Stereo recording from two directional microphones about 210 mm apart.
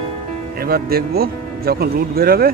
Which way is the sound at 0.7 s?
45° right (ahead or behind).